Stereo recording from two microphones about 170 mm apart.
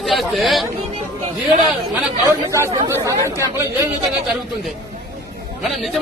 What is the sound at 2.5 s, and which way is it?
Speech, 15° right (ahead or behind).